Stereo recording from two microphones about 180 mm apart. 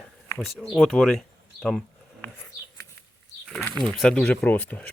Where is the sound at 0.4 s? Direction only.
Centre (ahead or behind).